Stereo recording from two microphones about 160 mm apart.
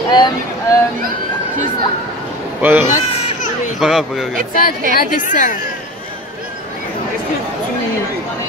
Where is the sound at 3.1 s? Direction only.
50° left (ahead or behind).